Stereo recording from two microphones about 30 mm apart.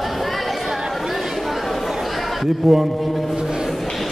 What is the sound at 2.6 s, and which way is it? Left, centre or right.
Speech, centre.